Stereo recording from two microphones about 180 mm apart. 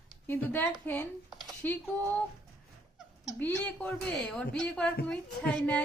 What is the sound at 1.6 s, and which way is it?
Speech, 10° left (ahead or behind).